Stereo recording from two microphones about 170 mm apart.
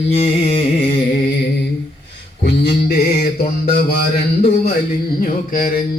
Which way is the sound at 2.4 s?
75° left (ahead or behind).